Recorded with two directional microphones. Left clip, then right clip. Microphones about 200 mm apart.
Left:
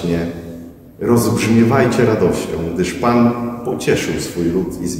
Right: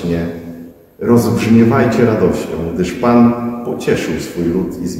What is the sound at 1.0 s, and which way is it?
A man's voice, 15° left (ahead or behind).